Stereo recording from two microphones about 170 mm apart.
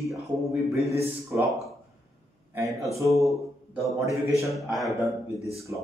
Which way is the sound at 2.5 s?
20° right (ahead or behind).